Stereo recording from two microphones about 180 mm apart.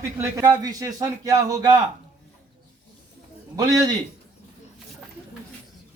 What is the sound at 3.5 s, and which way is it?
Speech, 20° right (ahead or behind).